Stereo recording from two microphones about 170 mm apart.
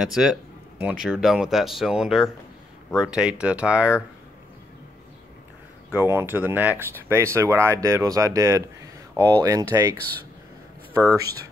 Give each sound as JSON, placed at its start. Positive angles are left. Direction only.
{"t": 0.0, "sound": "speech", "side_deg": -5}
{"t": 5.9, "sound": "speech", "side_deg": -15}
{"t": 11.0, "sound": "speech", "side_deg": -20}